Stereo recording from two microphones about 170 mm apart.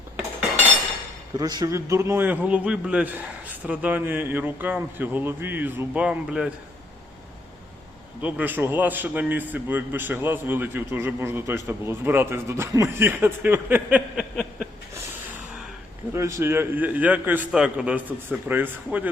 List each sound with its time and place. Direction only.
1.4 s a man's voice: 20° right (ahead or behind); by 6.5 s 5° right (ahead or behind)
8.2 s a man's voice: 10° right (ahead or behind)
14.9 s a sound: 10° right (ahead or behind)
16.1 s a man's voice: 15° right (ahead or behind)